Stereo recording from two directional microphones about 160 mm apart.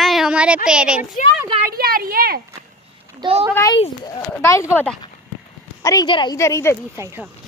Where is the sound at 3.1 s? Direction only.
35° right (ahead or behind).